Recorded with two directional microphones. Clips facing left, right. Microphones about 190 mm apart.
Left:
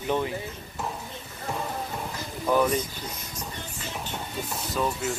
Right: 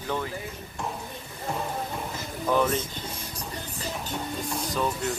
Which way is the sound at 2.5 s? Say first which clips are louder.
Left 1 dB; 10° left (ahead or behind).